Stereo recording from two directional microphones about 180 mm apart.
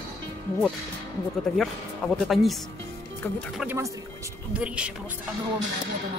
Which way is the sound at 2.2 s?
Centre (ahead or behind).